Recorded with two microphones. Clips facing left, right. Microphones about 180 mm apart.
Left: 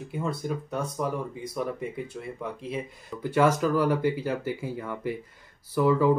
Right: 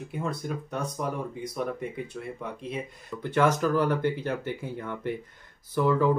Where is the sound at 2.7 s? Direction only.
5° left (ahead or behind).